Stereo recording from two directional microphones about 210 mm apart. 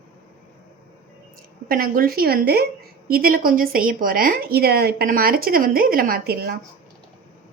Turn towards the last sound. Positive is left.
turn(degrees=-45)  # may be behind; listen again after turning